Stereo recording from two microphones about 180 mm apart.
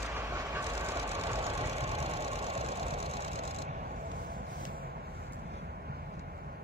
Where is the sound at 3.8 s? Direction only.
55° right (ahead or behind).